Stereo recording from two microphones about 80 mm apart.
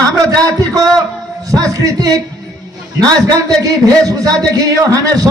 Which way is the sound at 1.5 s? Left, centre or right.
Right.